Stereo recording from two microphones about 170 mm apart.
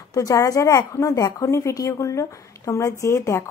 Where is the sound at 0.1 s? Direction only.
20° left (ahead or behind).